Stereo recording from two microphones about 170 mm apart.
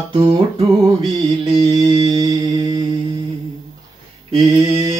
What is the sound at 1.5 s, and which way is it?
Mantra, 30° right (ahead or behind).